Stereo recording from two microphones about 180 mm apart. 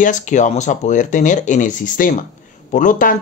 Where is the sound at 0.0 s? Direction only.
45° left (ahead or behind).